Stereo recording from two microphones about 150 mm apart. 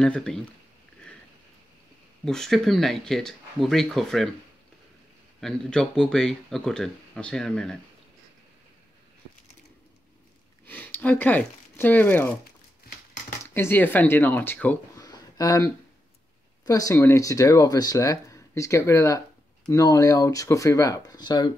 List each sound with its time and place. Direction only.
0.0 s speech: 5° left (ahead or behind)
2.2 s speech: 5° left (ahead or behind)
5.4 s speech: 5° left (ahead or behind)
10.6 s speech: 10° left (ahead or behind)
13.4 s speech: 15° left (ahead or behind)
15.0 s a sound: 25° left (ahead or behind)
16.6 s speech: 25° left (ahead or behind)